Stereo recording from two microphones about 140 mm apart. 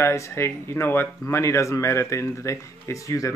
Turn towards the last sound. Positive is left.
turn(degrees=20)  # may be behind; listen again after turning